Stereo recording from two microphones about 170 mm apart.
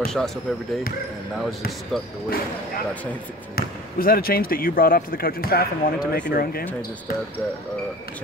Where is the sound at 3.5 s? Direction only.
60° left (ahead or behind).